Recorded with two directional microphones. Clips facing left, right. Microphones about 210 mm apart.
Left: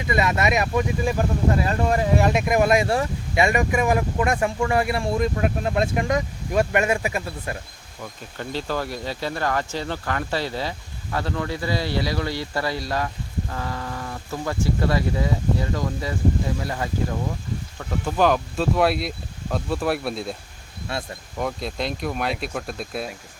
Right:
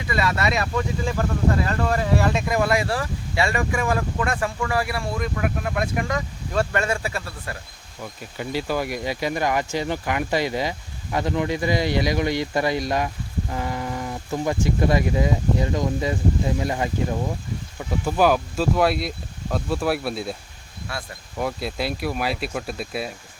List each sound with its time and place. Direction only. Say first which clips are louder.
0.1 s speech: left 2 dB; 20° left (ahead or behind)
8.4 s speech: right 2 dB; 10° right (ahead or behind)
17.7 s speech: right 1 dB; 10° right (ahead or behind)
20.9 s speech: left 4 dB; 25° left (ahead or behind)
21.3 s speech: right 1 dB; 5° right (ahead or behind)